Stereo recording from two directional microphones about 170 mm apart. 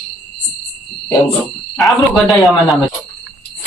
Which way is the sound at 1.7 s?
Centre (ahead or behind).